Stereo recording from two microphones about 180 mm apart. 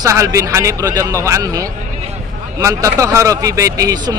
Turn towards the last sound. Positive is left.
turn(degrees=-20)  # may be behind; listen again after turning